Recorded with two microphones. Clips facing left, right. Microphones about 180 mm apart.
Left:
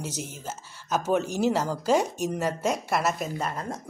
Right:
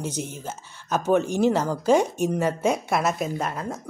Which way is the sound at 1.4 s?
5° left (ahead or behind).